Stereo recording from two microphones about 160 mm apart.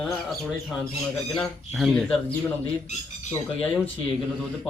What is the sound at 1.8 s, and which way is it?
Speech, centre (ahead or behind).